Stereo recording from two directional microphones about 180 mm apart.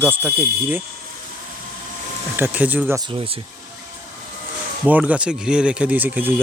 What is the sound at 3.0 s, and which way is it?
Speech, 30° right (ahead or behind).